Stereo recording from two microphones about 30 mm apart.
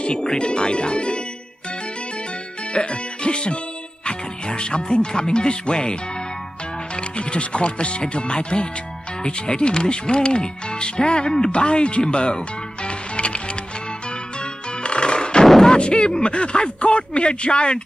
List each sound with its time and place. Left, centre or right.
0.0 s speech: left
2.7 s music: left
4.0 s speech: left
7.0 s speech: left
11.5 s music: left
15.4 s artillery fire: centre
15.7 s speech: left